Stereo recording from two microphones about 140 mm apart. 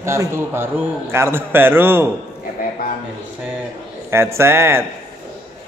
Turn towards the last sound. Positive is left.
turn(degrees=-15)  # may be behind; listen again after turning